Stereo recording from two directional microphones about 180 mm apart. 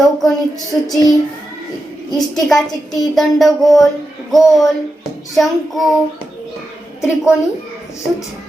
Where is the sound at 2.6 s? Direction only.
20° left (ahead or behind).